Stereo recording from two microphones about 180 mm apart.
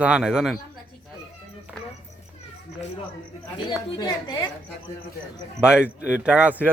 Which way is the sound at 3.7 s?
25° left (ahead or behind).